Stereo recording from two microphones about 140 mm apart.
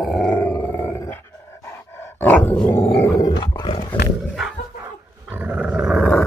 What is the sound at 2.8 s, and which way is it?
Dog, 20° left (ahead or behind).